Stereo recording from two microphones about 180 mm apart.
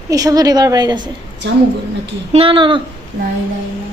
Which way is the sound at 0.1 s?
20° right (ahead or behind).